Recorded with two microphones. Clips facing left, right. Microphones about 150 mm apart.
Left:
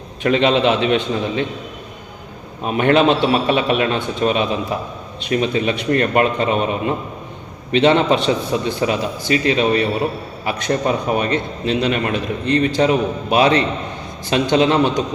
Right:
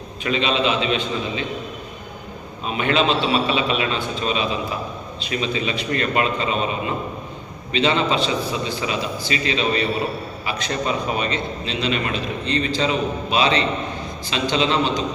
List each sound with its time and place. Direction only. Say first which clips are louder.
0.2 s a man's voice: left 6 dB; 60° left (ahead or behind)
2.6 s a man's voice: left 6 dB; 55° left (ahead or behind)
7.7 s a man's voice: left 6 dB; 60° left (ahead or behind)